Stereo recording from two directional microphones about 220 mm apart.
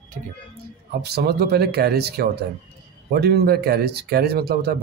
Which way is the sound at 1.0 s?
45° right (ahead or behind).